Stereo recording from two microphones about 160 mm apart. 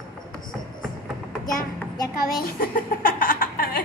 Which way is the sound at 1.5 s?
20° left (ahead or behind).